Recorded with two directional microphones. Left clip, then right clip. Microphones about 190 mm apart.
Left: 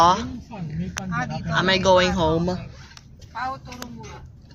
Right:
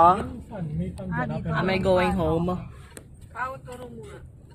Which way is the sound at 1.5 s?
25° left (ahead or behind).